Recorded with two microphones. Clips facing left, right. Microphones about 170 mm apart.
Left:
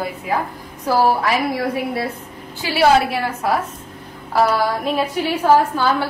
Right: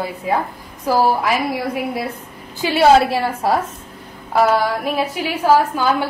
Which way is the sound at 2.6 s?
25° right (ahead or behind).